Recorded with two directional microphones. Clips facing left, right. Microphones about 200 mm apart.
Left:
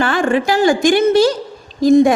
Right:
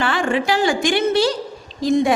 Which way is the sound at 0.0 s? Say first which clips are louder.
Left 4 dB; 45° left (ahead or behind).